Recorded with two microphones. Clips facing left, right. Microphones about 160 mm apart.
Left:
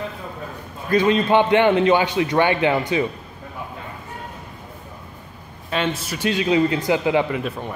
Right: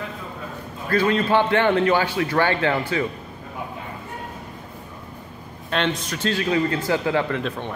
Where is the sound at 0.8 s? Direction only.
20° left (ahead or behind).